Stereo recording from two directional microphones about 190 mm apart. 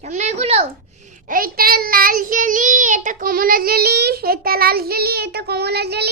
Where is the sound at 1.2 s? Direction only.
50° right (ahead or behind).